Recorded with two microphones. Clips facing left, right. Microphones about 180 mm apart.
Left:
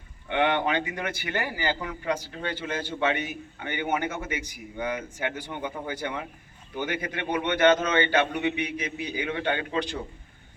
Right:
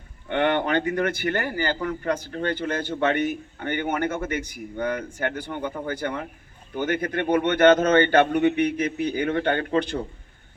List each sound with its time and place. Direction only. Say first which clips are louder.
0.3 s a man's voice: right 2 dB; 50° right (ahead or behind)